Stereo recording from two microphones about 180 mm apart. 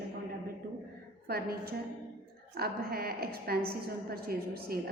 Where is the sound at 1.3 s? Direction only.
55° right (ahead or behind).